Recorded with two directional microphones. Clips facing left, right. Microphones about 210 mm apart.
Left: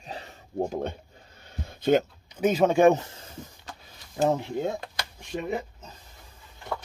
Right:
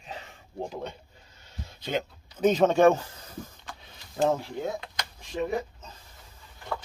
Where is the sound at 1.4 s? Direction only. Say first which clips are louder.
Left 11 dB; 55° left (ahead or behind).